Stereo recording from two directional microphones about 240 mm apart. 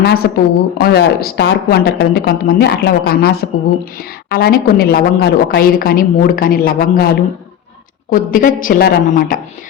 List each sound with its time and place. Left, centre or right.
0.0 s a woman's voice: left